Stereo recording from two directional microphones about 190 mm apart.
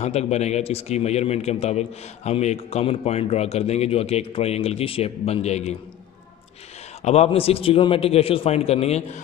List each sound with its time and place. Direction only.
0.0 s speech: 35° left (ahead or behind)
7.0 s speech: 35° left (ahead or behind)